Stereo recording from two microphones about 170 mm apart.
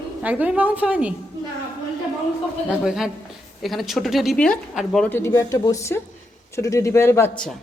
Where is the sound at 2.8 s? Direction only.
5° right (ahead or behind).